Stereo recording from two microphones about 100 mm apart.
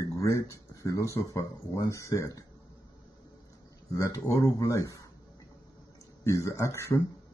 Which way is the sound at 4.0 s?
35° left (ahead or behind).